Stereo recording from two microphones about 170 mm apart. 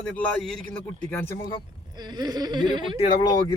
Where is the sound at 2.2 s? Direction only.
25° right (ahead or behind).